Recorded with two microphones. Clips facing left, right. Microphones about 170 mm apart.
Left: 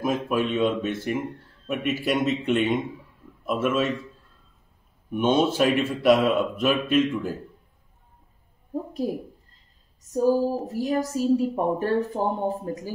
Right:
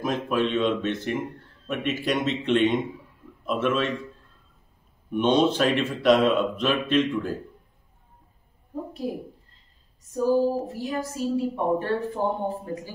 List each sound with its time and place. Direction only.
0.0 s a man's voice: 10° left (ahead or behind)
5.1 s a man's voice: 10° left (ahead or behind)
10.0 s a woman's voice: 40° left (ahead or behind)